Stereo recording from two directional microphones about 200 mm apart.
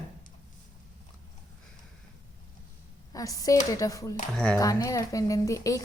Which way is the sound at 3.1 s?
15° left (ahead or behind).